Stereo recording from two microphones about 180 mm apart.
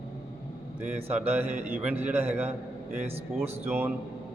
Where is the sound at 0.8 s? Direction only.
10° right (ahead or behind).